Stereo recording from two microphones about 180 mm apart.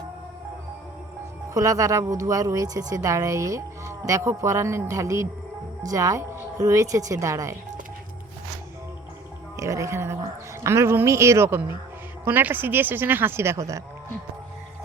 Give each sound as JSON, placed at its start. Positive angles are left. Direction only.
{"t": 1.5, "sound": "a woman's voice", "side_deg": -20}
{"t": 9.6, "sound": "speech", "side_deg": -15}